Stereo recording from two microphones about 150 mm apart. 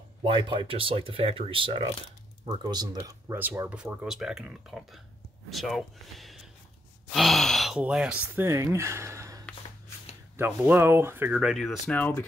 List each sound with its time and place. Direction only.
0.2 s speech: 35° right (ahead or behind); by 8.5 s 5° right (ahead or behind)
8.5 s speech: 20° right (ahead or behind); by 12.3 s 10° left (ahead or behind)